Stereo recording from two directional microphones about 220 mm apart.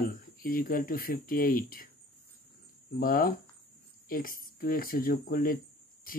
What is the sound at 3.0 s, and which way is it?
Speech, 40° left (ahead or behind).